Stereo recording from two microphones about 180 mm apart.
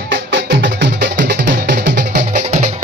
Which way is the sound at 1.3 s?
70° right (ahead or behind).